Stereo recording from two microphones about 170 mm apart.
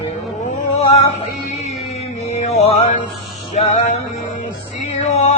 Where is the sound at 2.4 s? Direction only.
40° left (ahead or behind).